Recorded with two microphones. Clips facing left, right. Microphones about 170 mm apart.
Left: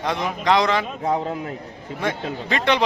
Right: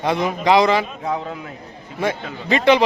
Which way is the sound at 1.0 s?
30° left (ahead or behind).